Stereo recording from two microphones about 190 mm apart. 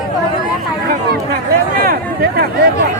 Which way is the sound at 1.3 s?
50° right (ahead or behind).